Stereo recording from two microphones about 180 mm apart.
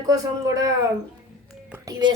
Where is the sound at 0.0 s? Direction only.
20° right (ahead or behind).